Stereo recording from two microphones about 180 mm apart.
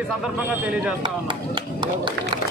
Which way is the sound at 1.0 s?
25° right (ahead or behind).